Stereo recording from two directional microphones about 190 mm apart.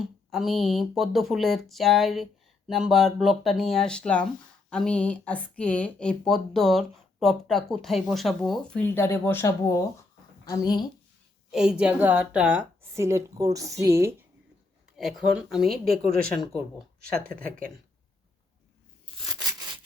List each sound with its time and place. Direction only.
0.0 s speech: centre (ahead or behind); by 10.8 s 20° left (ahead or behind)
11.5 s a woman's voice: 5° right (ahead or behind)
14.9 s speech: centre (ahead or behind)
17.0 s speech: 50° right (ahead or behind)
19.3 s a sound: 20° right (ahead or behind)